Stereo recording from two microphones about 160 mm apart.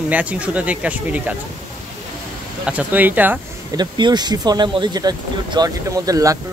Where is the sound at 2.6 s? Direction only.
10° right (ahead or behind).